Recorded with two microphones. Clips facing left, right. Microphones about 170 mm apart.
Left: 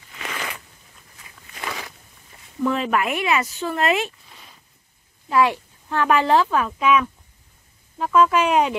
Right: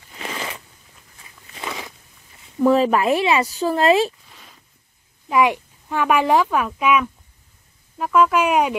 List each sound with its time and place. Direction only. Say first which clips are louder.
0.2 s crunch: right 2 dB; 30° right (ahead or behind)
2.6 s speech: right 6 dB; 35° right (ahead or behind)
5.3 s speech: right 1 dB; 15° right (ahead or behind)